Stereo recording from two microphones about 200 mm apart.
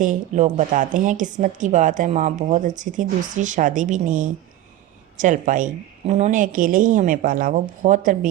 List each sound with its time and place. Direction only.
0.0 s a woman's voice: 35° right (ahead or behind)